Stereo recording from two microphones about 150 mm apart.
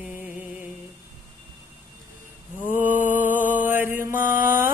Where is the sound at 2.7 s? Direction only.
10° right (ahead or behind).